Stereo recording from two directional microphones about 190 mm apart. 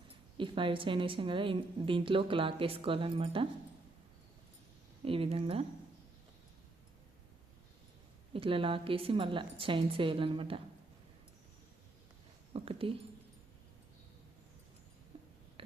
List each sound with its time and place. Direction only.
0.3 s a woman's voice: 25° right (ahead or behind)
5.0 s a woman's voice: 30° right (ahead or behind)
8.3 s a woman's voice: 30° right (ahead or behind)
12.5 s a sound: 30° right (ahead or behind)